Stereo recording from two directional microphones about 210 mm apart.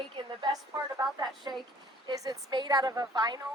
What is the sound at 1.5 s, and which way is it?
A woman's voice, 15° right (ahead or behind).